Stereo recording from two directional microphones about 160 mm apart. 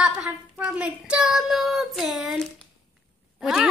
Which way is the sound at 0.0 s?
5° right (ahead or behind).